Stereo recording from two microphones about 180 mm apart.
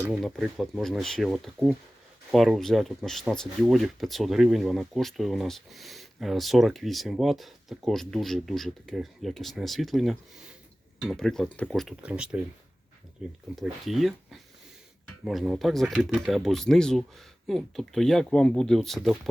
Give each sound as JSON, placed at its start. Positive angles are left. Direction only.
{"t": 0.0, "sound": "speech", "side_deg": 0}
{"t": 13.6, "sound": "speech", "side_deg": 0}